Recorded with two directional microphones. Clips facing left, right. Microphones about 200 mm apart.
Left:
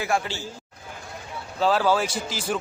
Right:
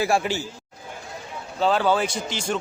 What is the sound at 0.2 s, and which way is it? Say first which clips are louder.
Speech: right 6 dB; 15° right (ahead or behind).